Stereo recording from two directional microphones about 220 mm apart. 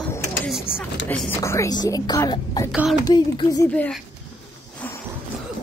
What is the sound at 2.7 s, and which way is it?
Speech, 5° right (ahead or behind).